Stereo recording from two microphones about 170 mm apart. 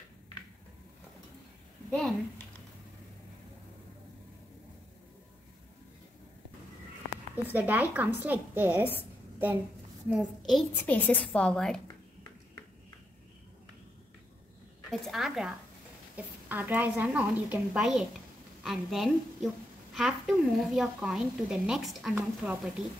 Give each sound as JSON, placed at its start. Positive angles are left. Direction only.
{"t": 1.9, "sound": "a woman's voice", "side_deg": 0}
{"t": 7.5, "sound": "a woman's voice", "side_deg": -10}
{"t": 10.0, "sound": "a woman's voice", "side_deg": -5}
{"t": 14.9, "sound": "a woman's voice", "side_deg": 0}